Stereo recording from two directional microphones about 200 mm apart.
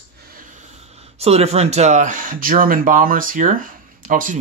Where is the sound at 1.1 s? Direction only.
30° right (ahead or behind).